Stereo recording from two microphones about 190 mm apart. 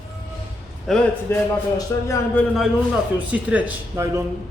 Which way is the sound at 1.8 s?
15° left (ahead or behind).